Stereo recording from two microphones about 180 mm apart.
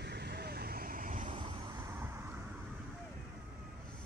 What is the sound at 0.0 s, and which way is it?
Vehicle, 65° right (ahead or behind).